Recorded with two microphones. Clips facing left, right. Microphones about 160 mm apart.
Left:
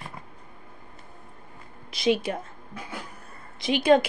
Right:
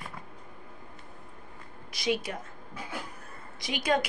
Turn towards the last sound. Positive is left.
turn(degrees=25)  # may be behind; listen again after turning